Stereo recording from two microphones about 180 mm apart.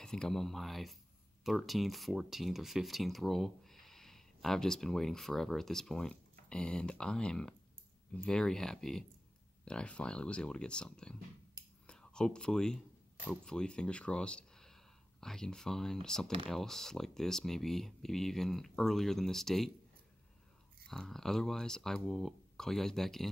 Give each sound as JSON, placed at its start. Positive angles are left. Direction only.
{"t": 0.0, "sound": "speech", "side_deg": 5}
{"t": 11.6, "sound": "whispering", "side_deg": -20}
{"t": 11.9, "sound": "speech", "side_deg": 5}
{"t": 20.8, "sound": "speech", "side_deg": 5}